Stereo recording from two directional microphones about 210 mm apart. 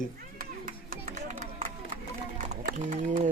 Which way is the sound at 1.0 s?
35° right (ahead or behind).